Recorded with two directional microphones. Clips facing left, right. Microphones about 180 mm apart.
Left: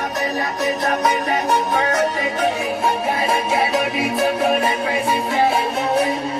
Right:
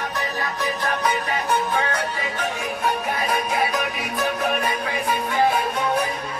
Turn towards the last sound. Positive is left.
turn(degrees=25)  # may be behind; listen again after turning